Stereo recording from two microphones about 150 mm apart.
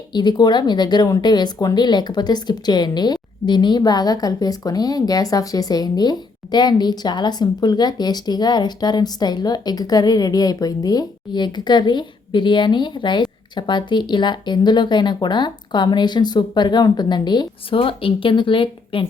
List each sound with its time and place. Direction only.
0.1 s speech: 30° left (ahead or behind)